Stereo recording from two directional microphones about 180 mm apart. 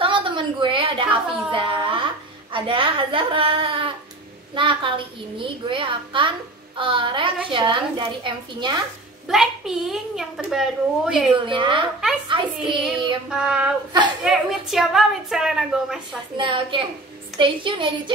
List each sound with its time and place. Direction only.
0.0 s a sound: 30° right (ahead or behind)
2.5 s a woman's voice: 30° right (ahead or behind)
9.3 s a woman's voice: centre (ahead or behind)
11.4 s a child's voice: 25° right (ahead or behind)
13.3 s a woman's voice: 5° right (ahead or behind)
16.3 s a child's voice: 30° right (ahead or behind)